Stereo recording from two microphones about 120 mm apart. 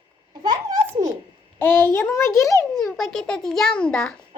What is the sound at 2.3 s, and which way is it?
Speech, 25° left (ahead or behind).